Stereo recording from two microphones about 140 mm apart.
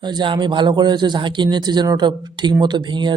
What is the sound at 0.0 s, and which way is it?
Speech, 30° right (ahead or behind).